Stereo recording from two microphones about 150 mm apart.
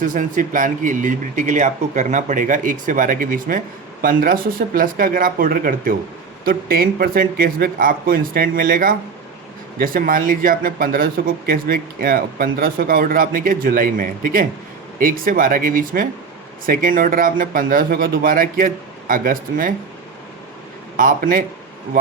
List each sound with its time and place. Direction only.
0.0 s speech: 60° right (ahead or behind)
20.9 s speech: 65° right (ahead or behind)